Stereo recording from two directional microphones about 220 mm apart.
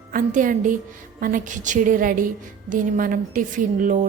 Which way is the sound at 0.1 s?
35° right (ahead or behind).